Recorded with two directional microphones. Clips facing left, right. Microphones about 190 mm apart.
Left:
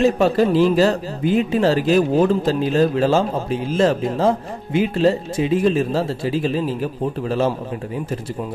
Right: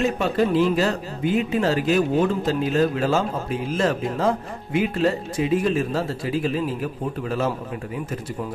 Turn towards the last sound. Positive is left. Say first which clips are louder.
# left 4 dB
turn(degrees=30)  # may be behind; listen again after turning